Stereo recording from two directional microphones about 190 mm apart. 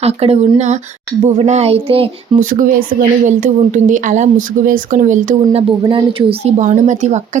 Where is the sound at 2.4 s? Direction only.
50° right (ahead or behind).